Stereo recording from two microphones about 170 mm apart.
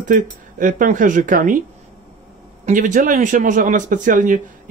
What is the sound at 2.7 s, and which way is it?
Speech, 50° right (ahead or behind).